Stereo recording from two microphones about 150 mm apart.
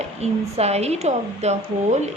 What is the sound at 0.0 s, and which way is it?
A woman's voice, 45° right (ahead or behind).